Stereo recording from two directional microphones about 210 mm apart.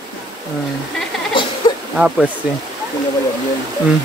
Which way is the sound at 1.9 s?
5° right (ahead or behind).